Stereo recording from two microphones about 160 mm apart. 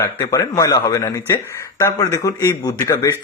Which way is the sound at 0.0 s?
20° left (ahead or behind).